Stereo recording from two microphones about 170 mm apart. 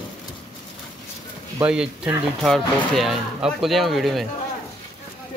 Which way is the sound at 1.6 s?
5° right (ahead or behind).